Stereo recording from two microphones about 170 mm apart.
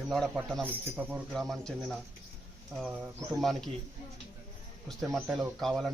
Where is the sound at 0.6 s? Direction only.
10° right (ahead or behind).